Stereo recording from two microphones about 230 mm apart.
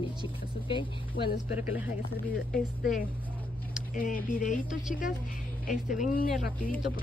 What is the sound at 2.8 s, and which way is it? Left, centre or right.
A woman's voice, left.